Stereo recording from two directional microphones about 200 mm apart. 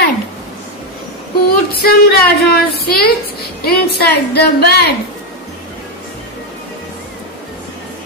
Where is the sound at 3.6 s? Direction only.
50° left (ahead or behind).